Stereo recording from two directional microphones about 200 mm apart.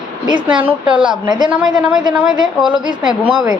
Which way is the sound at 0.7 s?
5° right (ahead or behind).